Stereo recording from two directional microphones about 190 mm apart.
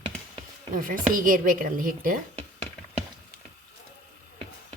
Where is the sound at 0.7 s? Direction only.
45° right (ahead or behind).